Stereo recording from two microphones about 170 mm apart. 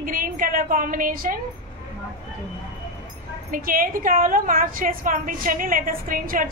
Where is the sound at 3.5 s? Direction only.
55° right (ahead or behind).